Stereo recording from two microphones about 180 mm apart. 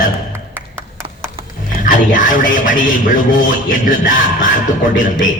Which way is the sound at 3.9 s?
50° left (ahead or behind).